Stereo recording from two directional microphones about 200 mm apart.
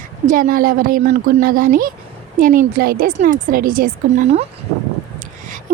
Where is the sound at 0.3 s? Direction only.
45° right (ahead or behind).